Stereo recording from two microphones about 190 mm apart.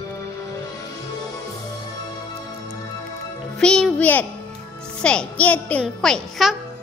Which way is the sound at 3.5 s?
5° left (ahead or behind).